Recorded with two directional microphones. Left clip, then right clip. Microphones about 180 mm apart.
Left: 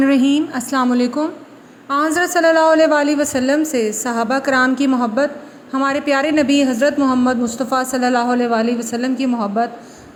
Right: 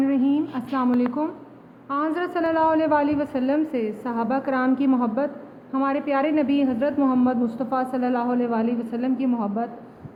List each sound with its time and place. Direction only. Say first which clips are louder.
0.0 s a woman's voice: left 7 dB; 35° left (ahead or behind)